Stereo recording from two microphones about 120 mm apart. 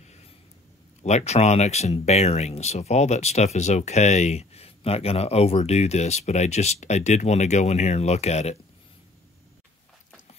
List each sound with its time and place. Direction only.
1.0 s speech: 65° left (ahead or behind)